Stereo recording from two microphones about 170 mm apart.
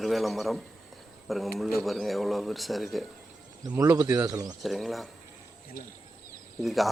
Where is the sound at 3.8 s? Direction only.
20° right (ahead or behind).